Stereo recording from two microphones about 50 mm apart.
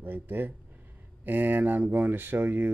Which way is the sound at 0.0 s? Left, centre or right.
Right.